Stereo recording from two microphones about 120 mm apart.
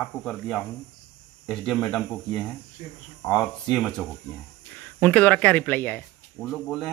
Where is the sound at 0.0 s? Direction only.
5° left (ahead or behind).